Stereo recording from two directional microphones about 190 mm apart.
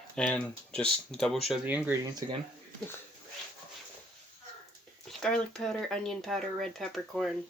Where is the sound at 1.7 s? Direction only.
10° right (ahead or behind).